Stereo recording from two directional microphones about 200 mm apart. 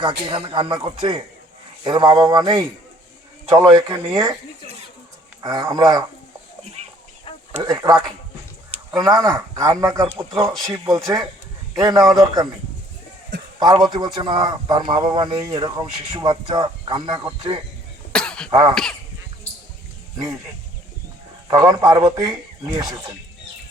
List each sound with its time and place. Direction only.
0.3 s a man's voice: 25° right (ahead or behind)
5.4 s a man's voice: 20° right (ahead or behind)
7.3 s chicken: 25° left (ahead or behind)
7.6 s a man's voice: 20° right (ahead or behind)
13.6 s a man's voice: 20° right (ahead or behind)
18.1 s cough: 5° left (ahead or behind)
18.7 s speech: 5° left (ahead or behind)
21.4 s a man's voice: 20° right (ahead or behind)